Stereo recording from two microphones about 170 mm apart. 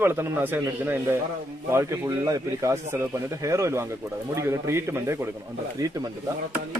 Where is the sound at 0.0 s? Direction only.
15° right (ahead or behind).